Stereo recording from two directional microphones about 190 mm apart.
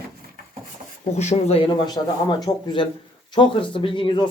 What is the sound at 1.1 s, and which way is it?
Speech, 35° left (ahead or behind).